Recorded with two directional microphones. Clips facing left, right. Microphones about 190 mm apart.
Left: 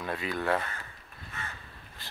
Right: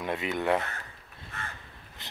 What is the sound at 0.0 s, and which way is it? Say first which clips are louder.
Speech: right 2 dB; 20° right (ahead or behind).